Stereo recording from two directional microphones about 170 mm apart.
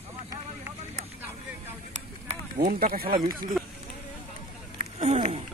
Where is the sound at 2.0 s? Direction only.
40° right (ahead or behind).